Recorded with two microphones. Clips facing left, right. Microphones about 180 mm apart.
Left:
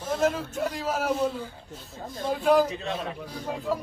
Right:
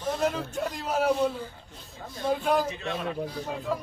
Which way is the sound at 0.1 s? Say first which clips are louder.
Left 2 dB; centre (ahead or behind).